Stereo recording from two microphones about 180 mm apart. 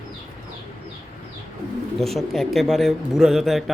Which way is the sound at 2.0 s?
Centre (ahead or behind).